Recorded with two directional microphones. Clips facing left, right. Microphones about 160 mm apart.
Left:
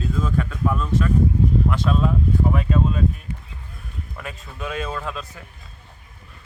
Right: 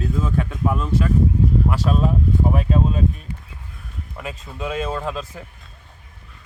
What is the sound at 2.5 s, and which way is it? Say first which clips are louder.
Speech: right 1 dB; 35° right (ahead or behind).